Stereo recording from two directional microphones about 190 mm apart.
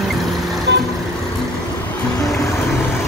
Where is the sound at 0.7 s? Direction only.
70° right (ahead or behind).